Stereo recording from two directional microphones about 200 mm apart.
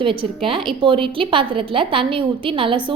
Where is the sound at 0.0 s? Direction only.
25° right (ahead or behind).